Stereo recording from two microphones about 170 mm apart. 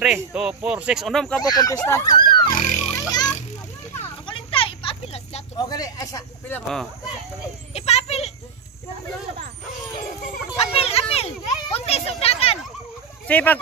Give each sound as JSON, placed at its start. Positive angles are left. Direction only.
{"t": 0.2, "sound": "speech", "side_deg": -5}
{"t": 1.4, "sound": "speech", "side_deg": 20}
{"t": 2.6, "sound": "oink", "side_deg": 40}
{"t": 3.0, "sound": "children playing", "side_deg": 25}
{"t": 4.3, "sound": "a sound", "side_deg": 30}
{"t": 5.7, "sound": "speech", "side_deg": 20}
{"t": 7.7, "sound": "a sound", "side_deg": 40}
{"t": 10.6, "sound": "a sound", "side_deg": 35}
{"t": 13.3, "sound": "speech", "side_deg": 10}